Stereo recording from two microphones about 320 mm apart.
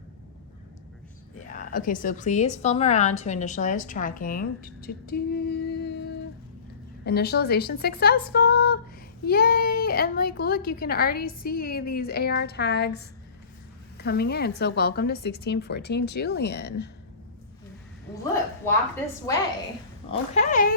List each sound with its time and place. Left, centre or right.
1.5 s a woman's voice: left
20.1 s a woman's voice: left